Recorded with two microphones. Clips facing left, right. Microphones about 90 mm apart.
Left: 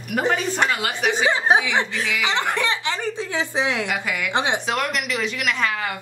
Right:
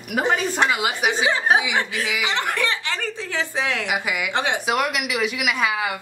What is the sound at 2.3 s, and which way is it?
A woman's voice, 20° left (ahead or behind).